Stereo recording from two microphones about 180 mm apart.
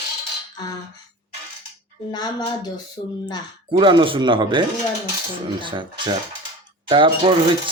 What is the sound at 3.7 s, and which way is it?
A man's voice, 25° right (ahead or behind).